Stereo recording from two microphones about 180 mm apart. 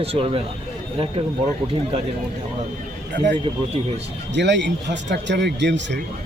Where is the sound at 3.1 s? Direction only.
75° right (ahead or behind).